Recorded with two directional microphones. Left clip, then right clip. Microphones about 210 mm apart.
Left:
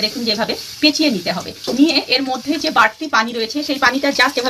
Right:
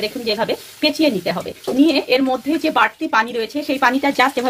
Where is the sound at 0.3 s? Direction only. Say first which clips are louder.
Left 1 dB; 55° right (ahead or behind).